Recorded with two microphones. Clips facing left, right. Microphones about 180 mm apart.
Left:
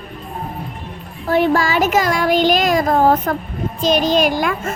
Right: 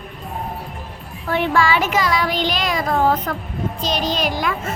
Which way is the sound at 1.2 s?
40° left (ahead or behind).